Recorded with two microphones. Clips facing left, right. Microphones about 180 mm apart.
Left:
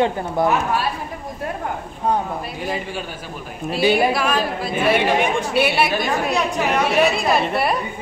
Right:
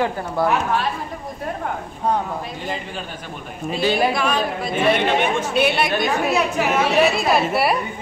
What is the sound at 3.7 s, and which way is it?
Speech, 10° left (ahead or behind).